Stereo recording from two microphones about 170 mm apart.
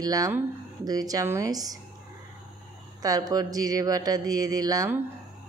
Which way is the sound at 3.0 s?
20° right (ahead or behind).